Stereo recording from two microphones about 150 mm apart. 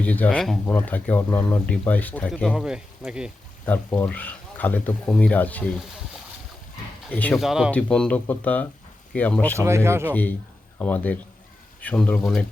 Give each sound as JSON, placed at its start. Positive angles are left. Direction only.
{"t": 0.0, "sound": "speech", "side_deg": 10}
{"t": 3.7, "sound": "speech", "side_deg": 10}
{"t": 7.1, "sound": "speech", "side_deg": 10}
{"t": 7.3, "sound": "speech", "side_deg": -5}
{"t": 9.6, "sound": "speech", "side_deg": -15}
{"t": 10.1, "sound": "speech", "side_deg": 10}